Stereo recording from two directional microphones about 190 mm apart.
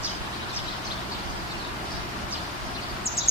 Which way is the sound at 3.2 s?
55° left (ahead or behind).